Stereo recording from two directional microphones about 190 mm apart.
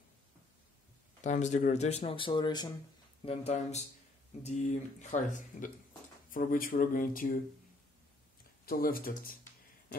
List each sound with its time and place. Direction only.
1.2 s speech: 40° left (ahead or behind); by 2.7 s 20° left (ahead or behind)
3.3 s speech: 35° left (ahead or behind)
8.6 s speech: 50° left (ahead or behind)